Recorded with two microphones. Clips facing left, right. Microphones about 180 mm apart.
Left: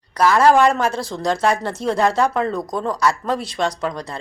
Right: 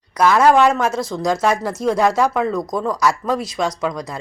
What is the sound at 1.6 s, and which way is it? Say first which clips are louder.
Speech: right 3 dB; 30° left (ahead or behind).